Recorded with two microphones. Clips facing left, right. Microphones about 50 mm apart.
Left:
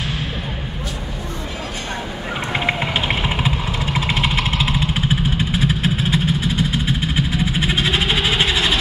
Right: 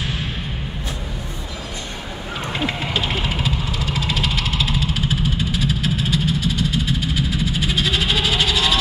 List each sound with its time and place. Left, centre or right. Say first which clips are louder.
2.5 s vehicle: left 3 dB; left